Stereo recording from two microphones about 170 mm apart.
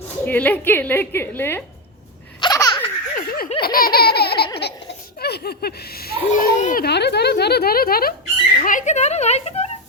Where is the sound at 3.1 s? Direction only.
55° left (ahead or behind).